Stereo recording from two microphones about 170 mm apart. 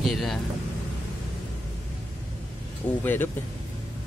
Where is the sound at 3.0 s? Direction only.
10° left (ahead or behind).